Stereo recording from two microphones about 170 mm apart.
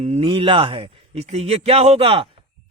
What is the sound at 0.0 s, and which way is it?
Speech, 40° right (ahead or behind).